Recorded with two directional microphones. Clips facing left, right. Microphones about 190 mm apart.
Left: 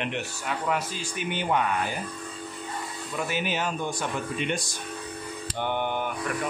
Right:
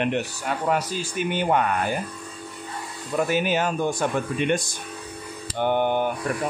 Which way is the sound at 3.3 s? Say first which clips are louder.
Right 5 dB; 45° right (ahead or behind).